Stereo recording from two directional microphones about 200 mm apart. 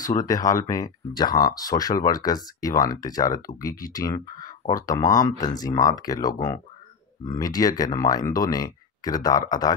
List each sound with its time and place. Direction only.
0.0 s speech: 20° left (ahead or behind)